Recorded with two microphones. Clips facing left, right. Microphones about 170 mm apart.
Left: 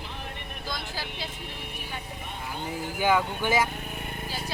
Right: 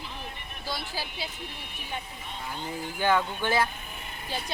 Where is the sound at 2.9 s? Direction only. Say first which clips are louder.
Left 1 dB; 10° left (ahead or behind).